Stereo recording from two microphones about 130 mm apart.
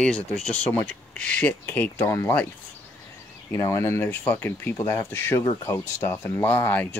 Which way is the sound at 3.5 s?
25° left (ahead or behind).